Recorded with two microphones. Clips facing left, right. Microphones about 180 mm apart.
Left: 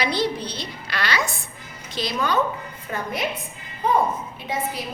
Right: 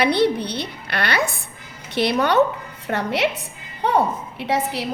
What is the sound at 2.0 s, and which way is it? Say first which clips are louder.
A woman's voice: right 6 dB; 65° right (ahead or behind).